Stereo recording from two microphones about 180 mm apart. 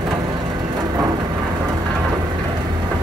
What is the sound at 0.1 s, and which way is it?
Vehicle, 25° right (ahead or behind).